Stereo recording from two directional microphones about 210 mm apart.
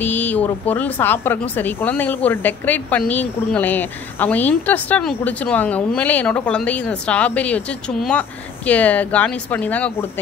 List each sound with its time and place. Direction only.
0.0 s a woman's voice: 10° left (ahead or behind)